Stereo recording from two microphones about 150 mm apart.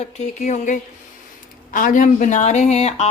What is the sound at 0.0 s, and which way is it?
A woman's voice, 50° left (ahead or behind).